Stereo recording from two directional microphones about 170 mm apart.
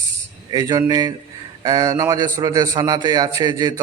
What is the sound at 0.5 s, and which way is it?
A man's voice, 20° right (ahead or behind).